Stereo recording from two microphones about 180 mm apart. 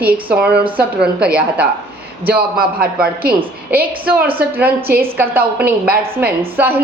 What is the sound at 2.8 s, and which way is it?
Speech, 55° right (ahead or behind).